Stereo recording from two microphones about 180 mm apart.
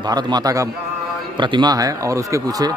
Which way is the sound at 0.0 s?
25° right (ahead or behind).